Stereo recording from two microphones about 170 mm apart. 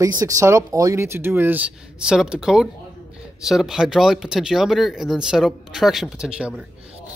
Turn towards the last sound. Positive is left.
turn(degrees=-5)  # may be behind; listen again after turning